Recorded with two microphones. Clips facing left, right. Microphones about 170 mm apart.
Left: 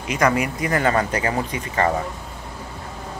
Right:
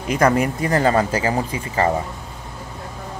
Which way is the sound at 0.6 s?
30° right (ahead or behind).